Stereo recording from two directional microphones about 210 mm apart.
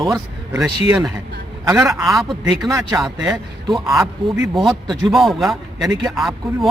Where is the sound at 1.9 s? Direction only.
Centre (ahead or behind).